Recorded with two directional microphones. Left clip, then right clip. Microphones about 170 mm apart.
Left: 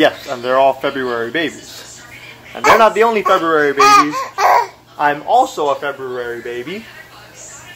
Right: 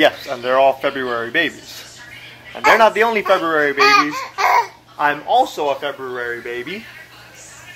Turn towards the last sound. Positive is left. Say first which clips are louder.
# left 1 dB
turn(degrees=-5)  # may be behind; listen again after turning